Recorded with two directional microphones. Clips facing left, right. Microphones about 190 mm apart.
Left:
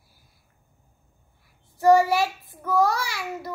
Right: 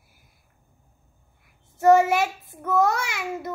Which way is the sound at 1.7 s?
20° right (ahead or behind).